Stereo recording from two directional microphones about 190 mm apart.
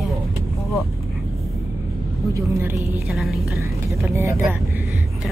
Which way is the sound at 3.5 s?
15° right (ahead or behind).